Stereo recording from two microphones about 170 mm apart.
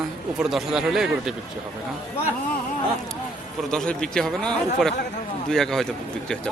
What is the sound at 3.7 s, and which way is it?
Speech, 5° left (ahead or behind).